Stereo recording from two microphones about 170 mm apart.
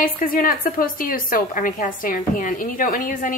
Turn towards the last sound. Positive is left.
turn(degrees=50)  # may be behind; listen again after turning